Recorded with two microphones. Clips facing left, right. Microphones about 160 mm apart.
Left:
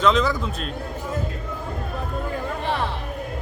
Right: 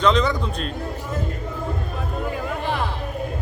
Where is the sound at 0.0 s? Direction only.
5° left (ahead or behind).